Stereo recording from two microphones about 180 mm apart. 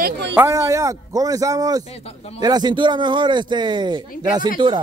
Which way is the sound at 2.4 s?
25° right (ahead or behind).